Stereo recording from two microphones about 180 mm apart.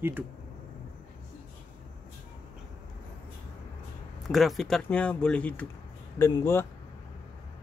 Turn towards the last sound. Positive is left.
turn(degrees=15)  # may be behind; listen again after turning